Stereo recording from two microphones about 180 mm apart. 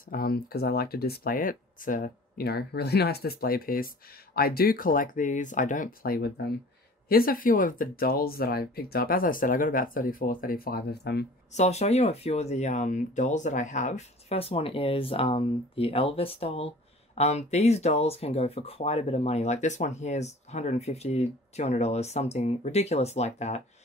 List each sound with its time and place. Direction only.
0.1 s speech: 55° left (ahead or behind)
7.1 s speech: 55° left (ahead or behind)
11.5 s speech: 40° left (ahead or behind)